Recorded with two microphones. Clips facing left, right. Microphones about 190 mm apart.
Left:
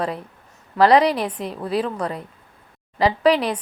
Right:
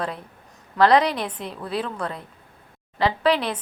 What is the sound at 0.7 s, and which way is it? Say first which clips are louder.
A woman's voice: left 3 dB; 10° left (ahead or behind).